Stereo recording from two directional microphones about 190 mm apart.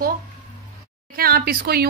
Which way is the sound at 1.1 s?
50° right (ahead or behind).